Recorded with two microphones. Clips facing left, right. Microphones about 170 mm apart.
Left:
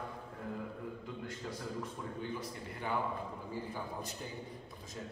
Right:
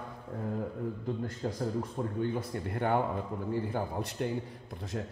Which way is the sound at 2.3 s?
60° right (ahead or behind).